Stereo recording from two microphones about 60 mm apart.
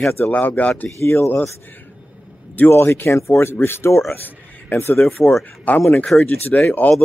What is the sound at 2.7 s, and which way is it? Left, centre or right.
A man's voice, left.